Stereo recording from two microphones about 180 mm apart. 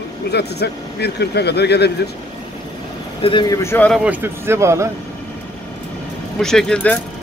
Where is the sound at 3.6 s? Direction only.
15° left (ahead or behind).